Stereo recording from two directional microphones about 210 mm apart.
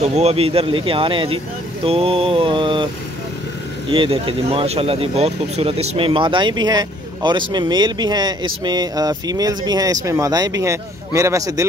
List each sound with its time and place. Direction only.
0.0 s speech: 30° right (ahead or behind)
3.9 s speech: 25° right (ahead or behind)